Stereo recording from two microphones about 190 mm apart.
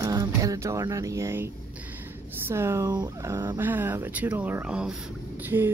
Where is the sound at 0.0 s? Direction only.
20° right (ahead or behind).